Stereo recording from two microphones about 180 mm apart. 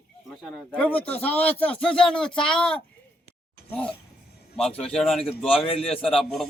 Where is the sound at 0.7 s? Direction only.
10° left (ahead or behind).